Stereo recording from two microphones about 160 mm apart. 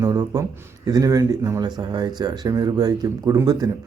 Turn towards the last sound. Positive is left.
turn(degrees=-20)  # may be behind; listen again after turning